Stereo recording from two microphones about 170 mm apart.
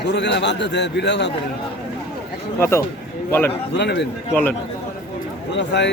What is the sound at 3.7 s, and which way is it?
Speech, 90° left.